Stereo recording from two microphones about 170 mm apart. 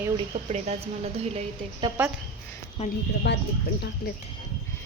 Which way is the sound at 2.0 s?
10° right (ahead or behind).